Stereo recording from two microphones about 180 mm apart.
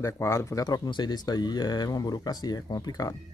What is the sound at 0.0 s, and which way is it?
Speech, 15° left (ahead or behind).